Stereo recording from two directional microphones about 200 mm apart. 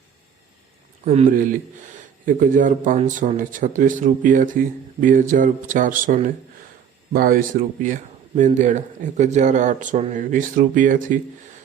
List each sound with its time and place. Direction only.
1.0 s a man's voice: 35° right (ahead or behind)